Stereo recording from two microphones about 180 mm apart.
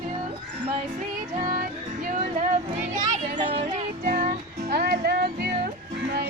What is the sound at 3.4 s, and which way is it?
Music, 35° right (ahead or behind).